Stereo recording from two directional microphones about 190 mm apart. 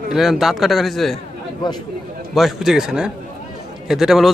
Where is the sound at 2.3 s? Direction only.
Centre (ahead or behind).